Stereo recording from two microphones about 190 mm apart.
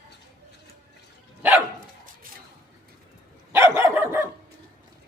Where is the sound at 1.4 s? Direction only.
10° right (ahead or behind).